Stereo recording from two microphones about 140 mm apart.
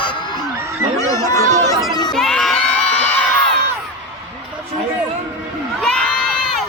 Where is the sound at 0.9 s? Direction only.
20° left (ahead or behind).